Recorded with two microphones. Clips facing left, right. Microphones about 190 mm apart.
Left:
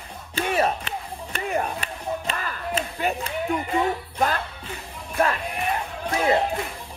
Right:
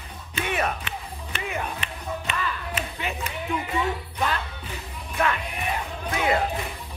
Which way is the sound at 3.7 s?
35° left (ahead or behind).